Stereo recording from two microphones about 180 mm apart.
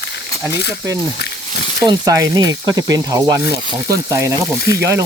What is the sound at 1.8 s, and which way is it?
Speech, 20° right (ahead or behind).